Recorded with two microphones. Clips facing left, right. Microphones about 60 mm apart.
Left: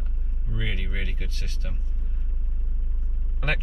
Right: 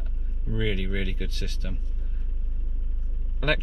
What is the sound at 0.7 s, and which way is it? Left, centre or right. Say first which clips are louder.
Speech: right 4 dB; left.